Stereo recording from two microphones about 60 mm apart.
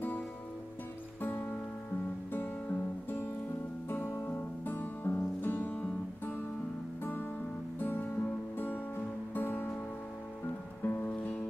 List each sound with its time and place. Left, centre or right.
2.3 s music: left
10.8 s music: left
11.1 s music: left